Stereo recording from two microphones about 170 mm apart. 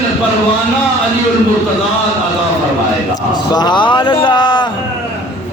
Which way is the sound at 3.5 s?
25° left (ahead or behind).